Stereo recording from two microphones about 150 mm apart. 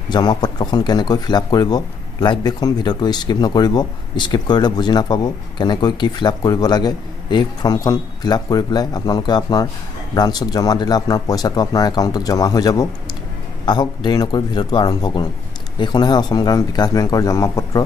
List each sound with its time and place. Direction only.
0.1 s a man's voice: 25° left (ahead or behind)